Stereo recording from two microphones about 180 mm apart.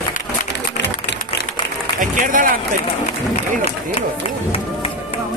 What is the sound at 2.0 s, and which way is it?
Speech, 45° right (ahead or behind).